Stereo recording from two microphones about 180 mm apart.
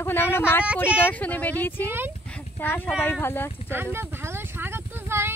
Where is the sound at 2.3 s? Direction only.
10° left (ahead or behind).